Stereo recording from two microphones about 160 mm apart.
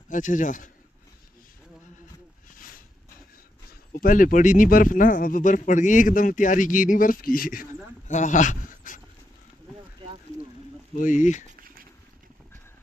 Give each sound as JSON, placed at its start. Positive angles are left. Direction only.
{"t": 0.1, "sound": "speech", "side_deg": 55}
{"t": 4.0, "sound": "speech", "side_deg": 55}
{"t": 8.1, "sound": "speech", "side_deg": 50}
{"t": 11.0, "sound": "speech", "side_deg": 55}